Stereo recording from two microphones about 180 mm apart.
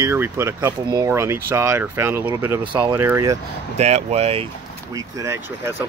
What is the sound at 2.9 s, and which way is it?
Speech, 15° right (ahead or behind).